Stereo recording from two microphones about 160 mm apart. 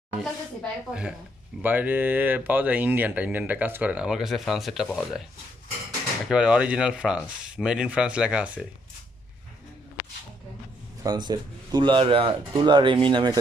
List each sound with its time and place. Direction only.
0.2 s speech: 5° right (ahead or behind)
6.2 s speech: 5° right (ahead or behind)
11.0 s speech: 25° right (ahead or behind)